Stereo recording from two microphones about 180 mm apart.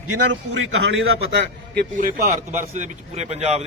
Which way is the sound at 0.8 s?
80° right.